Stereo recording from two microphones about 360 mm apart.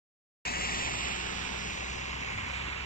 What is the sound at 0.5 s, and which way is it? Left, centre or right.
Vehicle, left.